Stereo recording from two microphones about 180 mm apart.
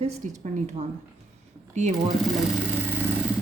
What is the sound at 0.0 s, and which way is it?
Speech, 40° right (ahead or behind).